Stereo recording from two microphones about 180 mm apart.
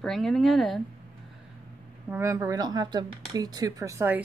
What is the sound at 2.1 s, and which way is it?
A woman's voice, 15° right (ahead or behind).